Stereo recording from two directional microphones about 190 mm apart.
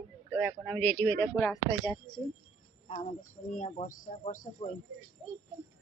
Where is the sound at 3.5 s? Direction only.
40° left (ahead or behind).